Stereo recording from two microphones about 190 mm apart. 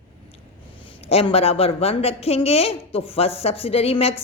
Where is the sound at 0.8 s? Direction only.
30° left (ahead or behind).